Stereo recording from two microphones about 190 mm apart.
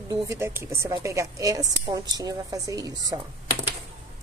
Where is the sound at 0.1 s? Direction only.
15° right (ahead or behind).